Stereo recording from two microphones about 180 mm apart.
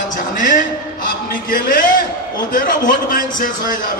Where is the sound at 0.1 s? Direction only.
45° left (ahead or behind).